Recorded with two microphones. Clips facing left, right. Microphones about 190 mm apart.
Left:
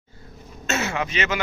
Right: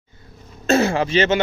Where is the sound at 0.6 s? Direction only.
35° right (ahead or behind).